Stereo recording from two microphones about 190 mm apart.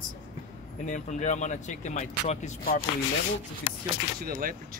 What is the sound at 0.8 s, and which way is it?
Speech, 40° left (ahead or behind).